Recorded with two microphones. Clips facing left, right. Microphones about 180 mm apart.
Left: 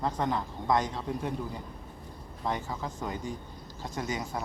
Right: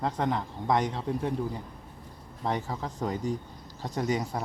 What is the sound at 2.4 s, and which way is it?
Speech, 30° right (ahead or behind).